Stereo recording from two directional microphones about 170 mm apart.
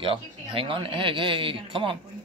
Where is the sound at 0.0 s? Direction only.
30° right (ahead or behind).